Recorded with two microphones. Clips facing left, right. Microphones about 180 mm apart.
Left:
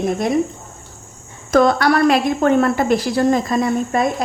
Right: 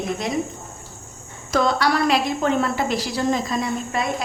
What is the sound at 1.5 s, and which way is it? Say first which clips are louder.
A woman's voice: left 6 dB; 50° left (ahead or behind).